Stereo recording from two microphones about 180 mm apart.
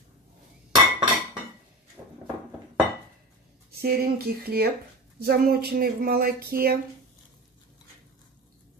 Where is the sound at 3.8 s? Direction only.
60° right (ahead or behind).